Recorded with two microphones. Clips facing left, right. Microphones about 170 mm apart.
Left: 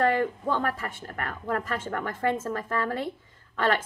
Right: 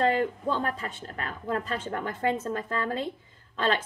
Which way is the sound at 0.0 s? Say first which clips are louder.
Left 1 dB; 25° right (ahead or behind).